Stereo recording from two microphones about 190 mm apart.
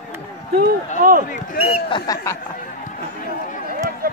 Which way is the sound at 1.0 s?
50° right (ahead or behind).